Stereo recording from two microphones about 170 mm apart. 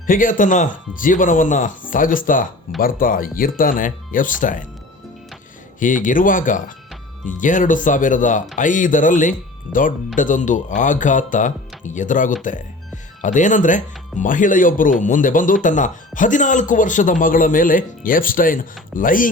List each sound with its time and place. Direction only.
0.1 s speech: 50° left (ahead or behind)
5.8 s speech: 50° left (ahead or behind)